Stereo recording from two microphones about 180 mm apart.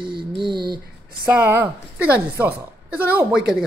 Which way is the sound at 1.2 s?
10° right (ahead or behind).